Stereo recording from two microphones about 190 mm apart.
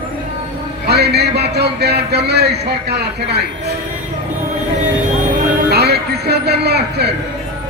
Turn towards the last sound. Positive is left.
turn(degrees=-60)  # may be behind; listen again after turning